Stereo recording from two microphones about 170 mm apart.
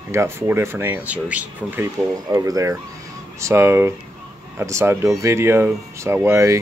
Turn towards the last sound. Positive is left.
turn(degrees=-15)  # may be behind; listen again after turning